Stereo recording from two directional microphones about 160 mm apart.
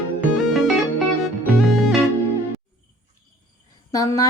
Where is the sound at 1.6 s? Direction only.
Centre (ahead or behind).